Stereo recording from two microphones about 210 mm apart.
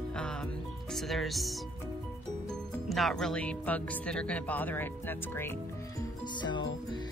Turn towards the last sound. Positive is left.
turn(degrees=20)  # may be behind; listen again after turning